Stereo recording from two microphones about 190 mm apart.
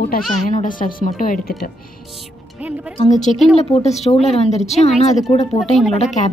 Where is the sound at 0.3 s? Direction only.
40° left (ahead or behind).